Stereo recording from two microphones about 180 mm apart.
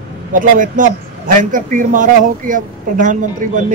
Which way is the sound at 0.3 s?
50° right (ahead or behind).